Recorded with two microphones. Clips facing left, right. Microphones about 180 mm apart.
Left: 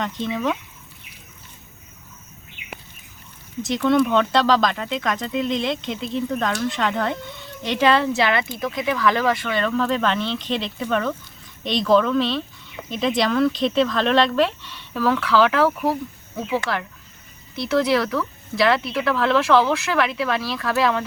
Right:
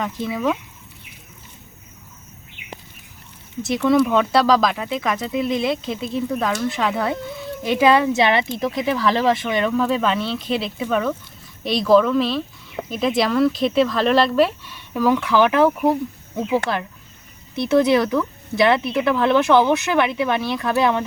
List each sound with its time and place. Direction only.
0.0 s speech: 5° right (ahead or behind)
3.6 s speech: 5° right (ahead or behind); by 21.0 s 20° right (ahead or behind)